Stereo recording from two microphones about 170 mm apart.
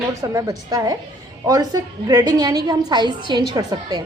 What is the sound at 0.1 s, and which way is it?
A woman's voice, 20° right (ahead or behind).